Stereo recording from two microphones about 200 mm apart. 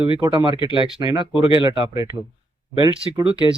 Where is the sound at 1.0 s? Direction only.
20° right (ahead or behind).